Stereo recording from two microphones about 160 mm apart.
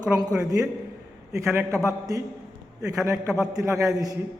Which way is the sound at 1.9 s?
20° right (ahead or behind).